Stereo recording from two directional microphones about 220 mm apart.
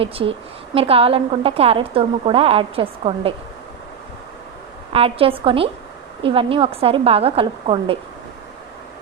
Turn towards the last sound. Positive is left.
turn(degrees=-25)  # may be behind; listen again after turning